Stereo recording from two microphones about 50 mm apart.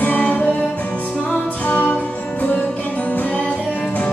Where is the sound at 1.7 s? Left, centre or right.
Left.